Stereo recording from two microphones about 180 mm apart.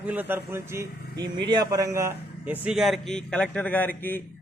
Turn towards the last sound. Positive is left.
turn(degrees=10)  # may be behind; listen again after turning